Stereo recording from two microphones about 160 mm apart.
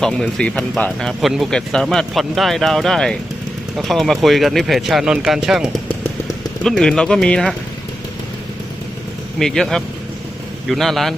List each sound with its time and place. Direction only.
0.0 s speech: 5° left (ahead or behind)
5.9 s a sound: 10° left (ahead or behind)
6.7 s speech: 5° left (ahead or behind)
9.4 s speech: 5° left (ahead or behind)